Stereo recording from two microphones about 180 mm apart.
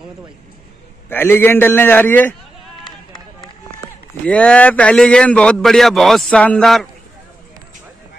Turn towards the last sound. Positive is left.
turn(degrees=0)  # may be behind; listen again after turning